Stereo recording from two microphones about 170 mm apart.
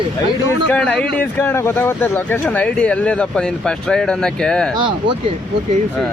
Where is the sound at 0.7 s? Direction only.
5° left (ahead or behind).